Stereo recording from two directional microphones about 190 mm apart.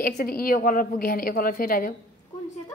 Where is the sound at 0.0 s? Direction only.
50° left (ahead or behind).